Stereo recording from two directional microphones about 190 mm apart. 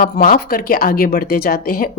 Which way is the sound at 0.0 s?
55° left (ahead or behind).